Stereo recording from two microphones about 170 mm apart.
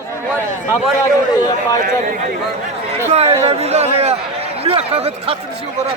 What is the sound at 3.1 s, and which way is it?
A man's voice, 35° right (ahead or behind).